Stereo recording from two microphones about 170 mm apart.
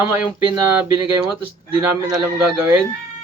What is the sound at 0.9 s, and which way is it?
Speech, 20° right (ahead or behind).